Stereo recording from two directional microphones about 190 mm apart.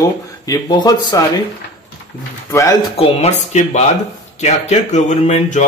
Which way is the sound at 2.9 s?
30° left (ahead or behind).